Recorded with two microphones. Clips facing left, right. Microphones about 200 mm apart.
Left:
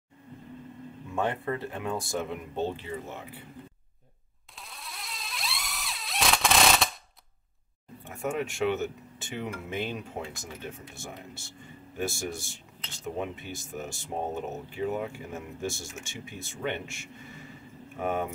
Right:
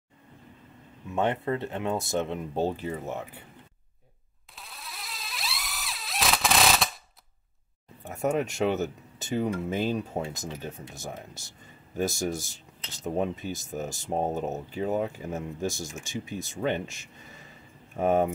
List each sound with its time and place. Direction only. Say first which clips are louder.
1.1 s speech: right 3 dB; 20° right (ahead or behind)
2.5 s speech: right 3 dB; 40° right (ahead or behind)
4.6 s mosquito: even; centre (ahead or behind)
8.0 s speech: right 4 dB; 40° right (ahead or behind)
12.0 s speech: right 4 dB; 40° right (ahead or behind)